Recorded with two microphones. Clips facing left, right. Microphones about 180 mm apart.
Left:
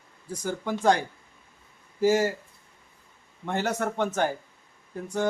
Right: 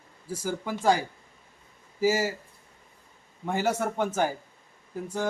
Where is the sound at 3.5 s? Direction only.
10° right (ahead or behind).